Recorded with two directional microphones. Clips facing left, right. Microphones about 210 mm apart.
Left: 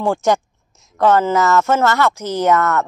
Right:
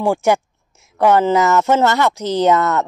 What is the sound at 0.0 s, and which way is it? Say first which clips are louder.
Speech: right 1 dB; 10° right (ahead or behind).